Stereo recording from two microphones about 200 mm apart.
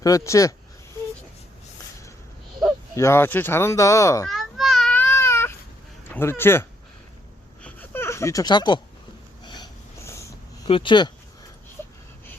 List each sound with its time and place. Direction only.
0.0 s speech: 15° left (ahead or behind)
2.9 s speech: 15° left (ahead or behind)
4.3 s baby cry: centre (ahead or behind)
6.1 s speech: 10° left (ahead or behind)
7.6 s a sound: 10° left (ahead or behind)
10.7 s speech: 25° left (ahead or behind)